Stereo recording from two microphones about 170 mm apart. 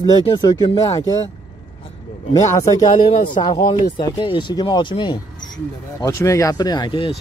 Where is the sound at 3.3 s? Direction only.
25° left (ahead or behind).